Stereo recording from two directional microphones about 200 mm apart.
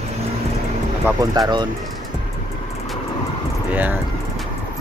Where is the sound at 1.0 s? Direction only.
20° right (ahead or behind).